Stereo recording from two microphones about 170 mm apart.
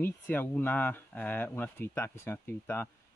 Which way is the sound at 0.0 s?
10° left (ahead or behind).